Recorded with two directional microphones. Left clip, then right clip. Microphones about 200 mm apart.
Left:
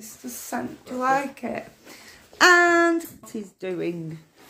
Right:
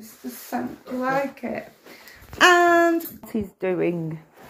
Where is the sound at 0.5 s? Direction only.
25° left (ahead or behind).